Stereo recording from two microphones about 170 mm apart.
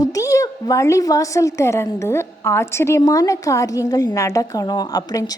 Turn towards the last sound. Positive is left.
turn(degrees=20)  # may be behind; listen again after turning